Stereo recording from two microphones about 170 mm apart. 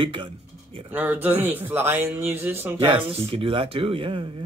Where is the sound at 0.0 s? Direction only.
30° right (ahead or behind).